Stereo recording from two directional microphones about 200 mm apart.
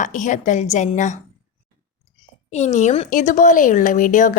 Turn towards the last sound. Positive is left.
turn(degrees=40)  # may be behind; listen again after turning